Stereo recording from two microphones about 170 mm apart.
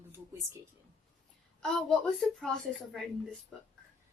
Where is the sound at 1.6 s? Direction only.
Centre (ahead or behind).